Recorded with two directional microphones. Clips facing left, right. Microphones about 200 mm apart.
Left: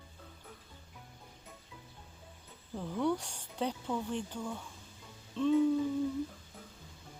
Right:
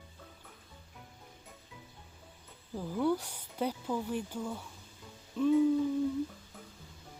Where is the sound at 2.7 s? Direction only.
5° right (ahead or behind).